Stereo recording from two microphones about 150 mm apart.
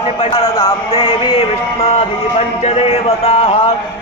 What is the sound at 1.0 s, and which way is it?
Music, 40° left (ahead or behind).